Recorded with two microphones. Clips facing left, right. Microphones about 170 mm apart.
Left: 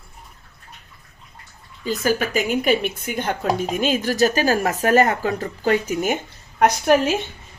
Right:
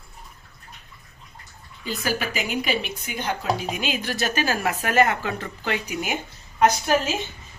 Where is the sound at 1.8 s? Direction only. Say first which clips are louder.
Left 6 dB; 45° left (ahead or behind).